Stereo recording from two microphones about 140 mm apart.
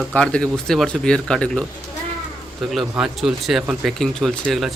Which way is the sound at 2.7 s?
Centre (ahead or behind).